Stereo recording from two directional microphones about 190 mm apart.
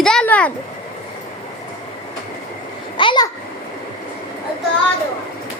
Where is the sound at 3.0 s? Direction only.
25° left (ahead or behind).